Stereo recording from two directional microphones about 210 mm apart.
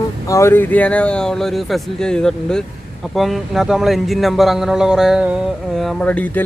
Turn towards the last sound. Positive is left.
turn(degrees=5)  # may be behind; listen again after turning